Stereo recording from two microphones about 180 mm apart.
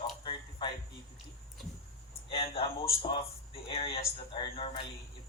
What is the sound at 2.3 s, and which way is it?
Speech, 30° left (ahead or behind).